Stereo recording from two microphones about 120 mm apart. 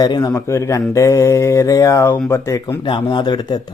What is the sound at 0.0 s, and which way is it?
Speech, 35° left (ahead or behind).